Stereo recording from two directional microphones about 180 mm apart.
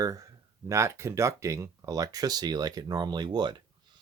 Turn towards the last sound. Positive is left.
turn(degrees=-25)  # may be behind; listen again after turning